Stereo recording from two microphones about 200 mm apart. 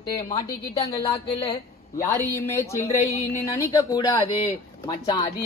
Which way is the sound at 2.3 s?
10° left (ahead or behind).